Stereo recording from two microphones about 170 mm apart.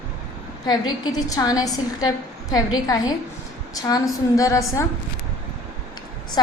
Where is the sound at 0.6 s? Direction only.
25° left (ahead or behind).